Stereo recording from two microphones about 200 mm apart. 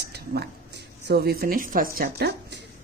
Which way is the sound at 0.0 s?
55° right (ahead or behind).